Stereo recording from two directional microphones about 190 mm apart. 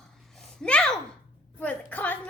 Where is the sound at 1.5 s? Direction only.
10° left (ahead or behind).